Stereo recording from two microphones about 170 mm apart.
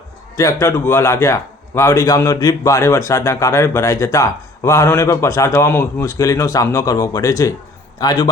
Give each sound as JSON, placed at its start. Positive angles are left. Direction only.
{"t": 0.3, "sound": "a man's voice", "side_deg": 20}